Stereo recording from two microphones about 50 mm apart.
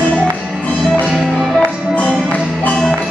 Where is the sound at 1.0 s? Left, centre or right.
Centre.